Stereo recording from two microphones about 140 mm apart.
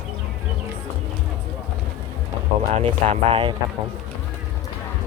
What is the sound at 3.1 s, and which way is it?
Speech, 40° right (ahead or behind).